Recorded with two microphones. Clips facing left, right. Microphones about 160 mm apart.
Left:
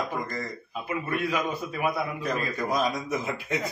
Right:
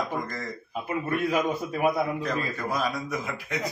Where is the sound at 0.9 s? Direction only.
40° right (ahead or behind).